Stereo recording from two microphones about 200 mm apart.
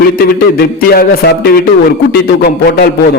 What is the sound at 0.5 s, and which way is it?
Speech, 50° left (ahead or behind).